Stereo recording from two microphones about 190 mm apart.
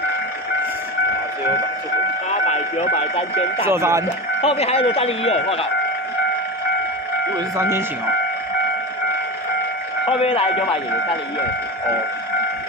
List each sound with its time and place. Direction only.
3.6 s speech: 15° right (ahead or behind)
4.4 s speech: 30° left (ahead or behind)
7.3 s speech: 15° right (ahead or behind)
10.0 s speech: 30° left (ahead or behind)